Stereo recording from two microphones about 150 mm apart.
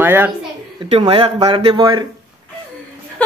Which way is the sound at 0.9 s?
40° right (ahead or behind).